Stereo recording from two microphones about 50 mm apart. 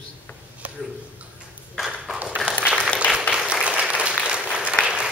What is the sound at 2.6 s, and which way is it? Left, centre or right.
Applause, right.